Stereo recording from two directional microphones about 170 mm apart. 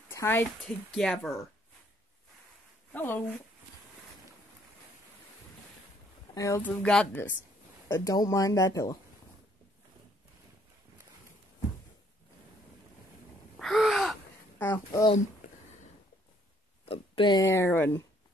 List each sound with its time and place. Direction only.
0.1 s speech: 15° left (ahead or behind)
2.9 s speech: 10° left (ahead or behind)
6.3 s speech: 20° left (ahead or behind)
6.8 s speech: 5° left (ahead or behind)
13.6 s gasp: centre (ahead or behind)
14.9 s speech: 25° left (ahead or behind)
16.8 s speech: 35° left (ahead or behind); by 18.0 s 15° left (ahead or behind)